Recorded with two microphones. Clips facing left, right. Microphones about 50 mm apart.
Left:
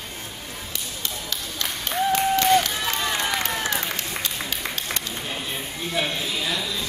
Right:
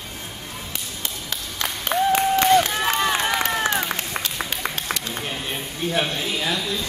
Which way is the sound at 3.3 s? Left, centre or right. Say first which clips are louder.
Right 4 dB; right.